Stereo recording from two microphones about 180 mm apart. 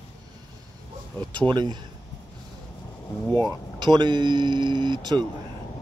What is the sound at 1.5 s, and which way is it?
Speech, 25° right (ahead or behind).